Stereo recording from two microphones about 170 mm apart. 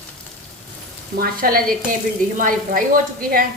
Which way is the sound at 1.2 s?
60° right (ahead or behind).